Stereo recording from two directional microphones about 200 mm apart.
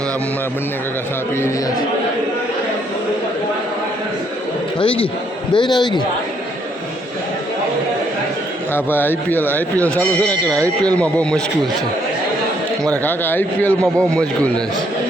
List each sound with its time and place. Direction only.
5.5 s a man's voice: 20° left (ahead or behind)
8.7 s speech: 10° left (ahead or behind)
12.9 s speech: 10° left (ahead or behind)